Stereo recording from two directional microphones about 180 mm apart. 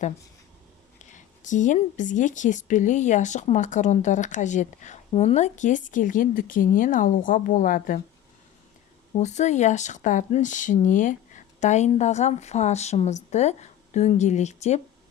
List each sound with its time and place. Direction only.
0.9 s speech: 45° left (ahead or behind)
9.1 s speech: 40° left (ahead or behind)